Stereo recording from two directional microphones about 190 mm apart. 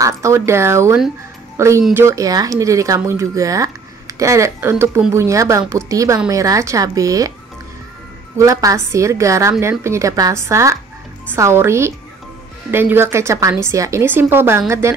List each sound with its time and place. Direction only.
0.0 s speech: 15° right (ahead or behind)
8.4 s speech: 15° right (ahead or behind)